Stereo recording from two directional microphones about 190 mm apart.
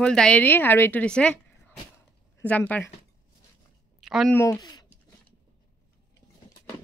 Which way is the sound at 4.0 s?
Centre (ahead or behind).